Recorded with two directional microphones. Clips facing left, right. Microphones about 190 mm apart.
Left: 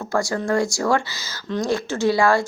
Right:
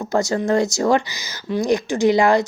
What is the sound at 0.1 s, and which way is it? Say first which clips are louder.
Speech: right 3 dB; 20° right (ahead or behind).